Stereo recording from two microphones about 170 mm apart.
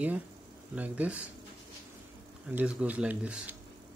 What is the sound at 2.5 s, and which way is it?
Speech, 10° right (ahead or behind).